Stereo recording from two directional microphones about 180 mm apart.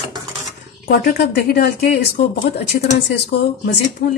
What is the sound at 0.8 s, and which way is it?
A woman's voice, 60° left (ahead or behind).